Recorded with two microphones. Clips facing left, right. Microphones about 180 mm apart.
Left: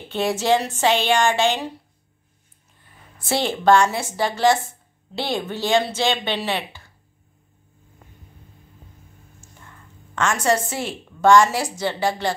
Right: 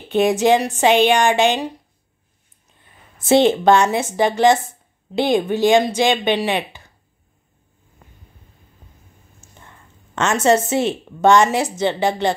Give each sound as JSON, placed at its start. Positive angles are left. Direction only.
{"t": 0.1, "sound": "speech", "side_deg": -20}
{"t": 3.2, "sound": "speech", "side_deg": -20}
{"t": 10.1, "sound": "a woman's voice", "side_deg": -25}